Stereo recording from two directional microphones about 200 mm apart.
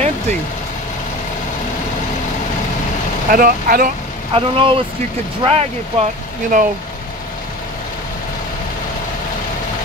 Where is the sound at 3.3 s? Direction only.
45° right (ahead or behind).